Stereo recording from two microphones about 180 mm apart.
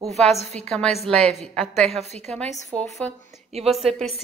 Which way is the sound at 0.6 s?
5° left (ahead or behind).